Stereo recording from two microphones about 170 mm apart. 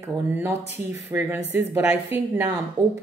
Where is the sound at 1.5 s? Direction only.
10° right (ahead or behind).